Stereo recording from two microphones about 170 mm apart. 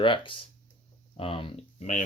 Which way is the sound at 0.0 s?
30° left (ahead or behind).